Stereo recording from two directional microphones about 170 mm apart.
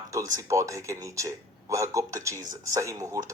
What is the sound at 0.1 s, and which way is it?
Speech, 20° right (ahead or behind).